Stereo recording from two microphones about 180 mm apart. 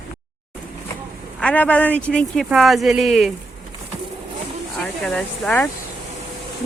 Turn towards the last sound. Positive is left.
turn(degrees=5)  # may be behind; listen again after turning